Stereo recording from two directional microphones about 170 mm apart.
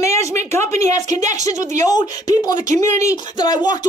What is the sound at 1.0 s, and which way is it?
Speech, 45° right (ahead or behind).